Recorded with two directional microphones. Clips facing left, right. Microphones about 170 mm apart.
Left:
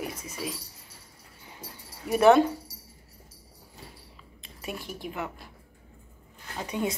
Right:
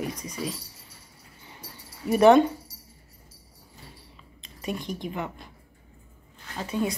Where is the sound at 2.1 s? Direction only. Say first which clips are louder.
Right 2 dB; 5° left (ahead or behind).